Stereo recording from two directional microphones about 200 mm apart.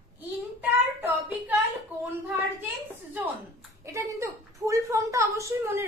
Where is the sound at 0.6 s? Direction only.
10° right (ahead or behind).